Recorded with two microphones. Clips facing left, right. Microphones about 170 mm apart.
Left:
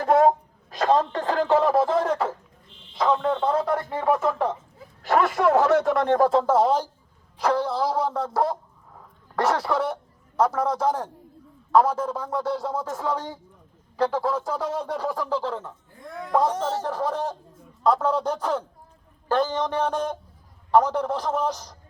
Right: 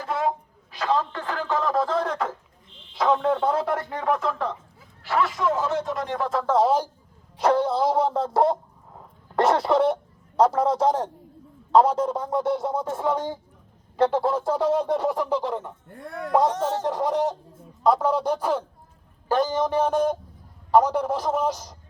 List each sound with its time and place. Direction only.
0.0 s a sound: 45° left (ahead or behind)
1.6 s speech: 20° left (ahead or behind)
3.0 s speech: 5° right (ahead or behind)
5.0 s speech: 50° left (ahead or behind)
6.4 s speech: 5° left (ahead or behind)
6.7 s a man's voice: 10° right (ahead or behind)
7.3 s speech: 25° right (ahead or behind)
11.7 s a sound: 25° right (ahead or behind)
15.9 s speech: 65° right (ahead or behind)
16.3 s a man's voice: 15° right (ahead or behind)